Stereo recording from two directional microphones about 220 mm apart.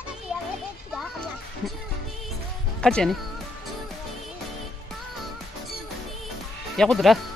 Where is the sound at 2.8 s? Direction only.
5° left (ahead or behind).